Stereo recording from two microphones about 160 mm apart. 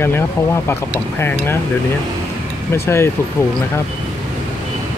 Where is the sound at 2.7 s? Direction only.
15° left (ahead or behind).